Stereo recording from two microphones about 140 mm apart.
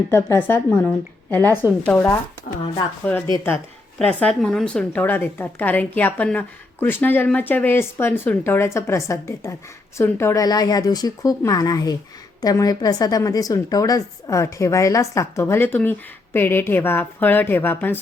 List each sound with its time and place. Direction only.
0.1 s speech: 20° left (ahead or behind)
1.5 s speech: 15° right (ahead or behind)
1.9 s speech: 15° left (ahead or behind)
3.9 s a woman's voice: 5° left (ahead or behind)